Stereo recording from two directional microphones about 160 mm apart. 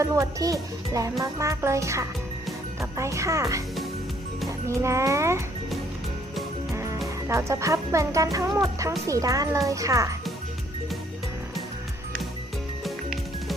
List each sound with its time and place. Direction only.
0.0 s a child's voice: 20° right (ahead or behind)
6.7 s music: 20° right (ahead or behind)
7.3 s speech: 20° right (ahead or behind)